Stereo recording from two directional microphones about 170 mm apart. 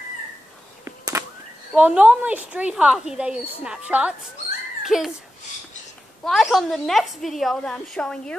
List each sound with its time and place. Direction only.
0.8 s a sound: 15° right (ahead or behind)
1.7 s speech: 10° right (ahead or behind)
6.2 s a woman's voice: centre (ahead or behind)